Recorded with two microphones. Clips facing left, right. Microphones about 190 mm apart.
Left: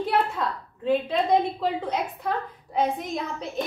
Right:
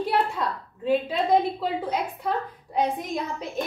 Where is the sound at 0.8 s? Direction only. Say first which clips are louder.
Even; 5° right (ahead or behind).